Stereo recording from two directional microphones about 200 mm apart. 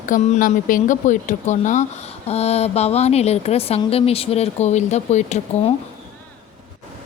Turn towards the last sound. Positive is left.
turn(degrees=35)  # may be behind; listen again after turning